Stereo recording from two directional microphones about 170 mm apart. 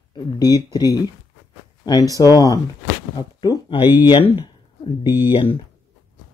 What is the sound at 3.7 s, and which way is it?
Speech, 10° right (ahead or behind).